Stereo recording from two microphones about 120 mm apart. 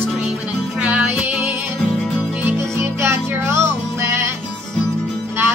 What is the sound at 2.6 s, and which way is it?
Music, 25° right (ahead or behind).